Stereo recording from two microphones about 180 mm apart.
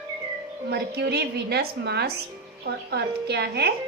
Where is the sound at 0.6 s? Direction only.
65° right (ahead or behind).